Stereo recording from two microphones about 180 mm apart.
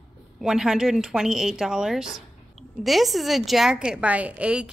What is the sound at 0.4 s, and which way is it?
A woman's voice, centre (ahead or behind).